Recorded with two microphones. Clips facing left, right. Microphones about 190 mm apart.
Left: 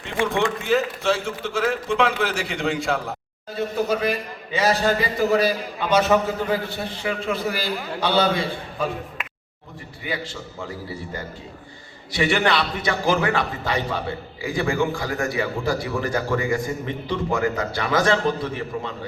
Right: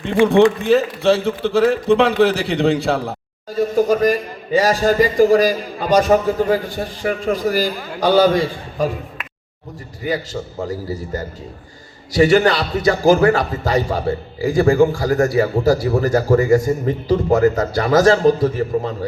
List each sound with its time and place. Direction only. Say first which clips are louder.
0.1 s a man's voice: right 10 dB; 35° right (ahead or behind)
10.0 s a man's voice: right 8 dB; 40° right (ahead or behind)